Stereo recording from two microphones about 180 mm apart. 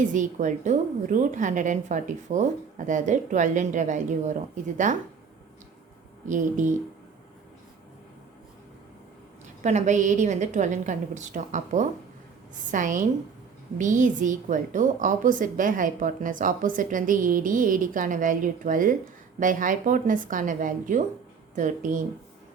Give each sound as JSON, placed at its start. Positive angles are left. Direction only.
{"t": 0.1, "sound": "a woman's voice", "side_deg": -45}
{"t": 6.2, "sound": "a woman's voice", "side_deg": -45}
{"t": 9.6, "sound": "a woman's voice", "side_deg": -40}